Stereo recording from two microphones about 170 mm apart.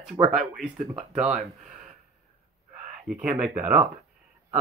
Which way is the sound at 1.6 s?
45° right (ahead or behind).